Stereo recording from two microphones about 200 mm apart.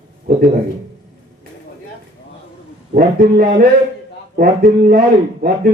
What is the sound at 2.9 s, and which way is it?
Speech, 50° right (ahead or behind).